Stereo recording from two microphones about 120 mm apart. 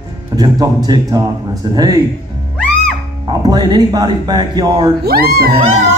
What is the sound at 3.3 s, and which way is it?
Speech, 35° right (ahead or behind).